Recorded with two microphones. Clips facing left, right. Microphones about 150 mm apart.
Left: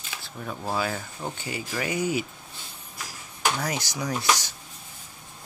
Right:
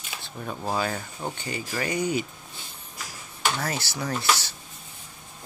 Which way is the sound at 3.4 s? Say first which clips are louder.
Left 1 dB; 10° left (ahead or behind).